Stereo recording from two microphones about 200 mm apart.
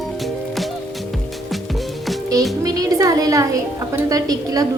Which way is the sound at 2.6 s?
15° right (ahead or behind).